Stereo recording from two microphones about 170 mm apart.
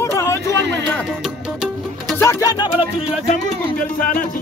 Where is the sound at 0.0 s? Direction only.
15° left (ahead or behind).